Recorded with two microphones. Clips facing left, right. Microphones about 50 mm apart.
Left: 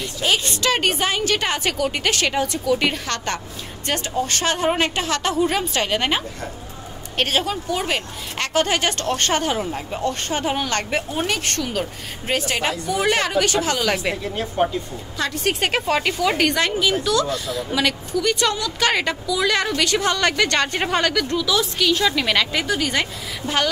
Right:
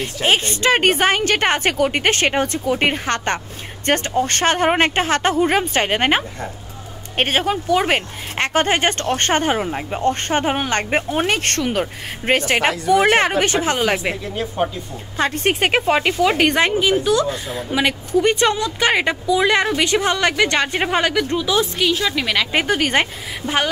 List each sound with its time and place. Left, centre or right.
0.2 s a woman's voice: right
7.6 s speech: right
8.4 s a woman's voice: right
13.2 s speech: right
15.1 s a woman's voice: right
15.6 s speech: centre
21.9 s a woman's voice: centre
22.5 s a woman's voice: right
23.4 s speech: centre